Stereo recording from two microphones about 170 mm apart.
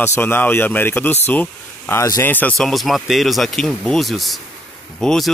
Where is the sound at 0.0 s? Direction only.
15° left (ahead or behind).